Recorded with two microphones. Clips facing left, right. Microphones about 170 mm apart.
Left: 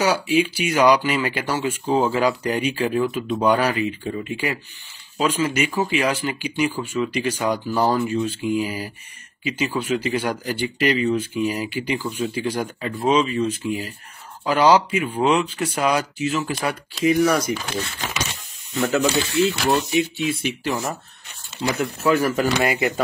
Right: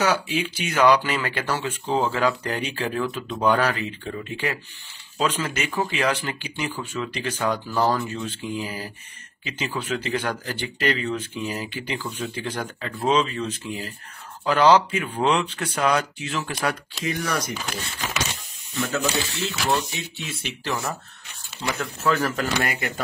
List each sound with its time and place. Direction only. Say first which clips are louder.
0.0 s speech: left 4 dB; 10° left (ahead or behind)
18.9 s speech: left 6 dB; 10° left (ahead or behind)